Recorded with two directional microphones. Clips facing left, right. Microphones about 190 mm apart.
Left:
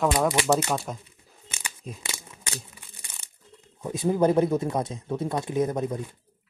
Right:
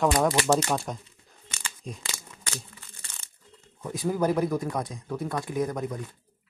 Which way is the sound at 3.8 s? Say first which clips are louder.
Left 4 dB; 20° left (ahead or behind).